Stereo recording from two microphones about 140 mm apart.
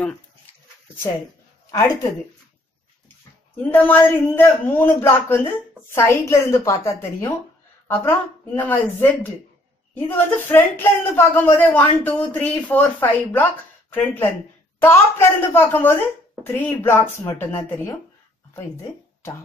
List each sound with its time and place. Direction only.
3.6 s speech: 15° left (ahead or behind)
8.5 s speech: 10° left (ahead or behind)